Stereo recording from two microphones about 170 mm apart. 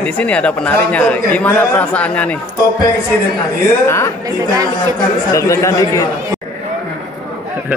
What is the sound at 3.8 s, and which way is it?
Speech, 15° left (ahead or behind).